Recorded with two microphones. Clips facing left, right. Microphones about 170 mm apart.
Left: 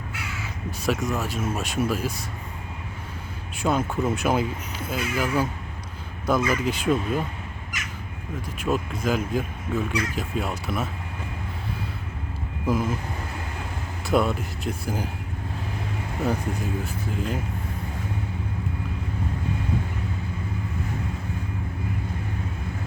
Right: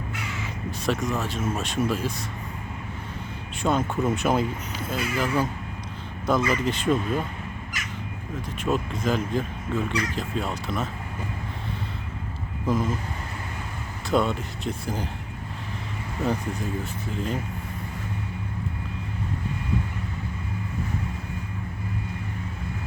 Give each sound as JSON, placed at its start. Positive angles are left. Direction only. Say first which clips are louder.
{"t": 0.9, "sound": "speech", "louder": "left 1 dB", "side_deg": 0}
{"t": 3.6, "sound": "speech", "louder": "even", "side_deg": 0}
{"t": 8.6, "sound": "speech", "louder": "even", "side_deg": 0}
{"t": 12.6, "sound": "speech", "louder": "even", "side_deg": 5}
{"t": 14.1, "sound": "speech", "louder": "left 1 dB", "side_deg": 5}
{"t": 16.2, "sound": "speech", "louder": "even", "side_deg": 0}